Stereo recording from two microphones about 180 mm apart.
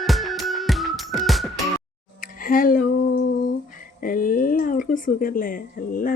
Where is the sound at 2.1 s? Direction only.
50° left (ahead or behind).